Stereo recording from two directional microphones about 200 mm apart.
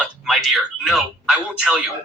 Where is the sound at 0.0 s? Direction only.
Centre (ahead or behind).